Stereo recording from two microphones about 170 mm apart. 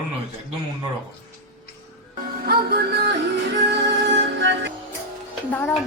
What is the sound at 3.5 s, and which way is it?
Music, 90° right.